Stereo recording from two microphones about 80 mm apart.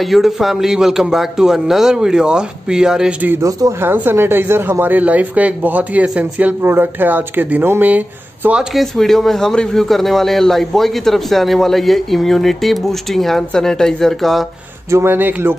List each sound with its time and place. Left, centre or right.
0.1 s speech: centre
3.8 s speech: right
8.7 s a man's voice: centre
14.9 s speech: right